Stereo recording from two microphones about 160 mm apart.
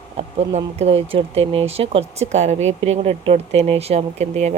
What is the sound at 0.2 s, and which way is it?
Speech, 40° right (ahead or behind).